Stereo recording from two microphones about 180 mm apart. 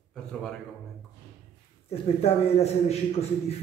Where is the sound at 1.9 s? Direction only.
35° left (ahead or behind).